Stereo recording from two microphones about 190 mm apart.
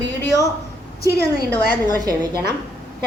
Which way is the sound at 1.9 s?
20° right (ahead or behind).